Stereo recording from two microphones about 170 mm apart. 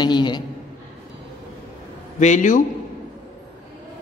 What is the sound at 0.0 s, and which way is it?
Speech, 25° left (ahead or behind).